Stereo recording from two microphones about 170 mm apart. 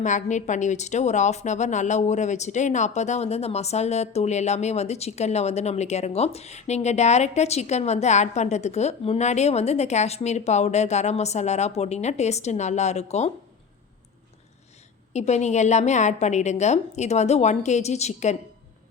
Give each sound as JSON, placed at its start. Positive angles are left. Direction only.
{"t": 0.0, "sound": "a woman's voice", "side_deg": 45}
{"t": 15.1, "sound": "a woman's voice", "side_deg": 40}